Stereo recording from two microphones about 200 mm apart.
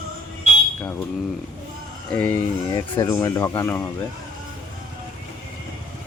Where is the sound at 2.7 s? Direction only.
20° left (ahead or behind).